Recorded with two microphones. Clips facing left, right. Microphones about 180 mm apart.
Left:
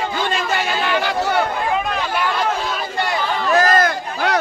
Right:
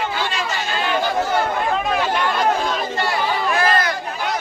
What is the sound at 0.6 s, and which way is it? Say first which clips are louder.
Chatter: left 1 dB; 75° left (ahead or behind).